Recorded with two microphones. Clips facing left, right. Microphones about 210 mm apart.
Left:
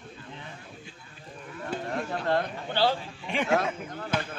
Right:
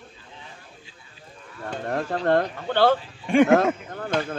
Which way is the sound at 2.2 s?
55° right (ahead or behind).